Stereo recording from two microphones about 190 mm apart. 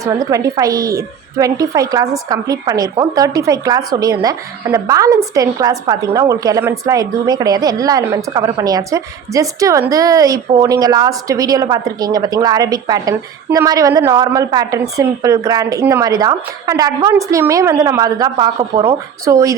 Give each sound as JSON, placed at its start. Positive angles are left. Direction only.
{"t": 0.0, "sound": "a woman's voice", "side_deg": -20}